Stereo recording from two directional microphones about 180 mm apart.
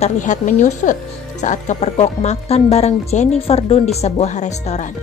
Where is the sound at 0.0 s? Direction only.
45° left (ahead or behind).